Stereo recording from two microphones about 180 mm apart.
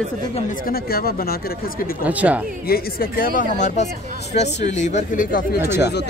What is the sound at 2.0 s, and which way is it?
Speech, 10° right (ahead or behind).